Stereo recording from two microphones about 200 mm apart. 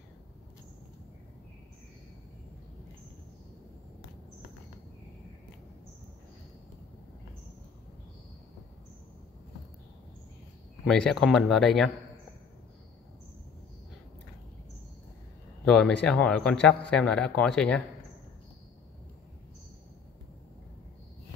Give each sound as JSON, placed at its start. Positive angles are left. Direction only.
{"t": 10.9, "sound": "a man's voice", "side_deg": 0}
{"t": 15.6, "sound": "a man's voice", "side_deg": 5}